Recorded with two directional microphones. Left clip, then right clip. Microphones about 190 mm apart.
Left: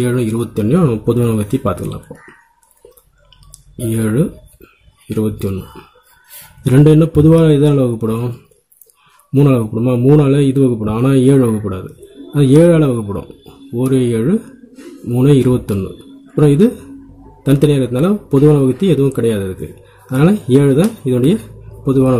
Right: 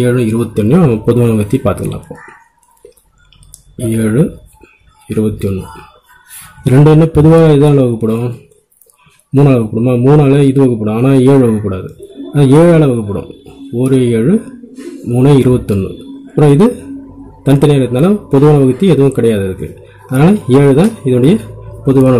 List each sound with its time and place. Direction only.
0.0 s a man's voice: 15° left (ahead or behind)
3.7 s a man's voice: 15° left (ahead or behind)